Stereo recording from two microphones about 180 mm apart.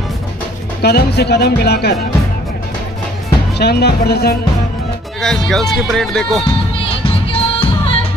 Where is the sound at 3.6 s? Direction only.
65° left (ahead or behind).